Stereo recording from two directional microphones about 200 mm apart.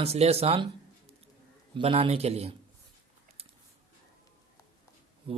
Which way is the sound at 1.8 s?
25° right (ahead or behind).